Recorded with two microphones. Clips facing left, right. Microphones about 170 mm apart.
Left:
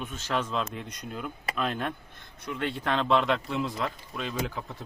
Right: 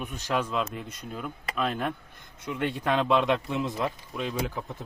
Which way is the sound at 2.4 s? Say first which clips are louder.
Right 2 dB; 15° right (ahead or behind).